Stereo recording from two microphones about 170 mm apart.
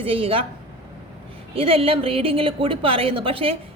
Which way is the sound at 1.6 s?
35° right (ahead or behind).